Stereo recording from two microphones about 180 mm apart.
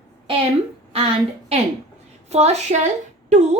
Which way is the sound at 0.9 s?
35° right (ahead or behind).